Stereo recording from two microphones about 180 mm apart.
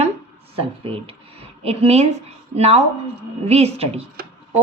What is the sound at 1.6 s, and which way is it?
A woman's voice, 35° right (ahead or behind).